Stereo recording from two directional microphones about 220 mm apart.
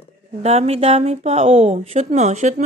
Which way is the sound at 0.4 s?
30° right (ahead or behind).